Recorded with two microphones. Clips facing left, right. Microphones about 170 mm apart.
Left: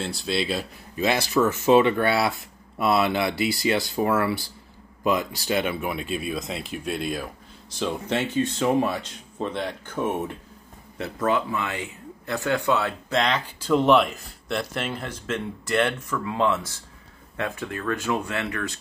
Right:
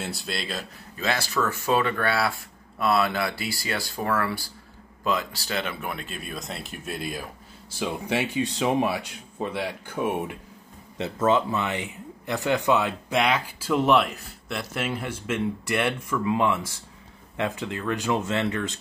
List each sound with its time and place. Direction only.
0.0 s speech: centre (ahead or behind); by 5.9 s 15° left (ahead or behind)
5.9 s speech: 5° left (ahead or behind); by 10.3 s 10° right (ahead or behind)
11.0 s speech: 20° right (ahead or behind)